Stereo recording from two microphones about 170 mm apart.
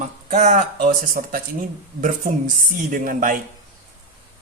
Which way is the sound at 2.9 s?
55° right (ahead or behind).